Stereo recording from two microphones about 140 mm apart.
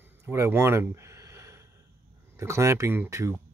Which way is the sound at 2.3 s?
20° right (ahead or behind).